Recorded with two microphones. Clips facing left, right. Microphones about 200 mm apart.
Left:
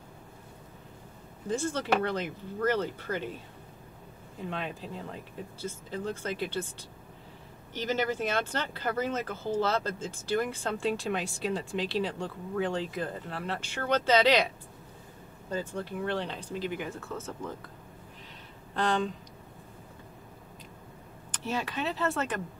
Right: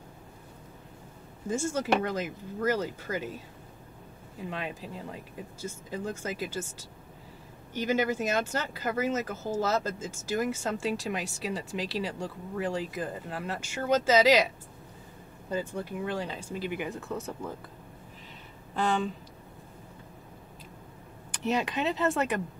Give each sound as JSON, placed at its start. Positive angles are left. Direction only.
{"t": 1.7, "sound": "speech", "side_deg": -10}
{"t": 4.4, "sound": "speech", "side_deg": -5}
{"t": 7.7, "sound": "speech", "side_deg": -10}
{"t": 15.5, "sound": "speech", "side_deg": -15}
{"t": 18.8, "sound": "speech", "side_deg": -5}
{"t": 21.3, "sound": "speech", "side_deg": -15}